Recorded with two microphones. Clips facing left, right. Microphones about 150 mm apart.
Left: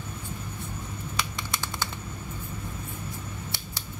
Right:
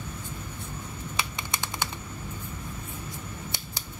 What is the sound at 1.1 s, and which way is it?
Computer keyboard, 20° right (ahead or behind).